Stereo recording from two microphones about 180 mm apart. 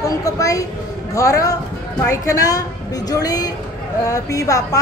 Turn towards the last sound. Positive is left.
turn(degrees=20)  # may be behind; listen again after turning